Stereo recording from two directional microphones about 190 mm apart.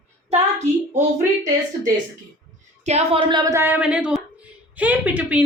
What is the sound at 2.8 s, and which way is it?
A woman's voice, 35° right (ahead or behind).